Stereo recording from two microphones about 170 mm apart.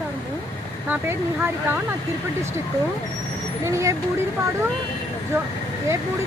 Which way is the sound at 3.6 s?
15° right (ahead or behind).